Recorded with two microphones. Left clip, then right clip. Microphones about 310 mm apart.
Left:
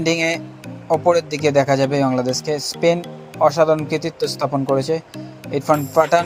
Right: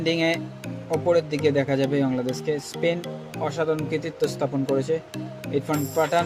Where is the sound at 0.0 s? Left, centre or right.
Centre.